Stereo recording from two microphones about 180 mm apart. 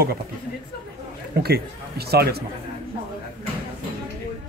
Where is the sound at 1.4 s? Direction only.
60° right (ahead or behind).